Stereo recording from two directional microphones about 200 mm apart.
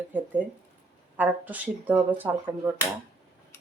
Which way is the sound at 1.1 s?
10° right (ahead or behind).